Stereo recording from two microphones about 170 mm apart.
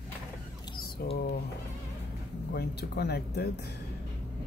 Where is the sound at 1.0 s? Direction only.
65° left (ahead or behind).